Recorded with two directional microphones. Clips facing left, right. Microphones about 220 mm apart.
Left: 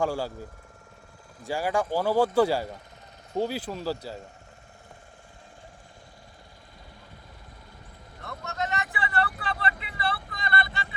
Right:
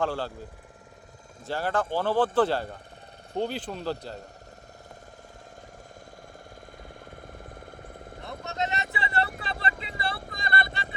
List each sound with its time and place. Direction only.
0.0 s speech: 10° left (ahead or behind)
1.5 s speech: 10° left (ahead or behind)
8.3 s boat: 20° right (ahead or behind)
8.9 s speech: 30° right (ahead or behind)
9.3 s speech: 40° right (ahead or behind)
9.8 s vehicle: 45° right (ahead or behind)